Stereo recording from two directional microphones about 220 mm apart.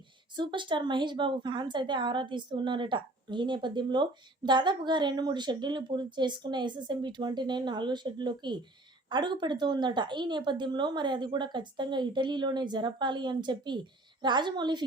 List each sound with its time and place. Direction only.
0.3 s a woman's voice: 20° right (ahead or behind)